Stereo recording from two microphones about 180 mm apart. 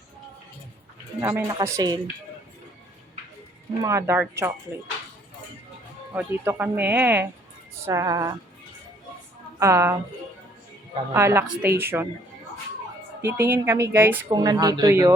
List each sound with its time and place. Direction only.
1.2 s speech: 15° right (ahead or behind)
3.8 s speech: 15° right (ahead or behind)
6.1 s speech: 10° right (ahead or behind)
7.9 s music: 20° right (ahead or behind)
9.6 s speech: 15° right (ahead or behind)
11.1 s speech: 15° right (ahead or behind)
13.2 s speech: 10° right (ahead or behind)